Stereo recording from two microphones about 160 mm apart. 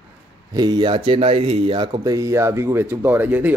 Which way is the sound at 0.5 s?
25° right (ahead or behind).